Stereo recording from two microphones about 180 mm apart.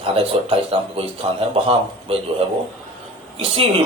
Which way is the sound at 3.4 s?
30° right (ahead or behind).